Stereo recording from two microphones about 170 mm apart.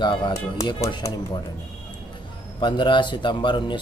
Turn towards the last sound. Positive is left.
turn(degrees=30)  # may be behind; listen again after turning